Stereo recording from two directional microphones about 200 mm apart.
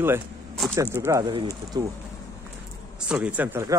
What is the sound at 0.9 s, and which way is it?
Speech, 15° right (ahead or behind).